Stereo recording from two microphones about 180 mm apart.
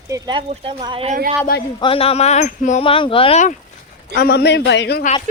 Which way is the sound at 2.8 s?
30° left (ahead or behind).